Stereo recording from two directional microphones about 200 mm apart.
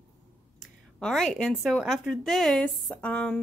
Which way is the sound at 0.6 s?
Centre (ahead or behind).